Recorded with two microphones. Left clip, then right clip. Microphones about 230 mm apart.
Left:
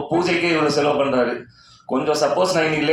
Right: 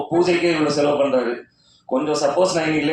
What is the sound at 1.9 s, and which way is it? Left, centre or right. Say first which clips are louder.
Speech: right 1 dB; left.